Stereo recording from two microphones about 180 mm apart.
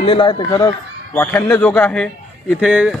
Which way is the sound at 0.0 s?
30° left (ahead or behind).